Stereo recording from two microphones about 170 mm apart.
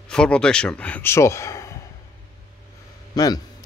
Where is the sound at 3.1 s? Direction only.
20° left (ahead or behind).